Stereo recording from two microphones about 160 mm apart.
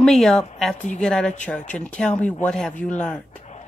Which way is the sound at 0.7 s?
50° left (ahead or behind).